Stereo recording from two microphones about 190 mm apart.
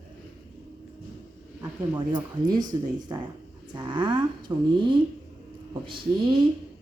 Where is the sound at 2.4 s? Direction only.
20° right (ahead or behind).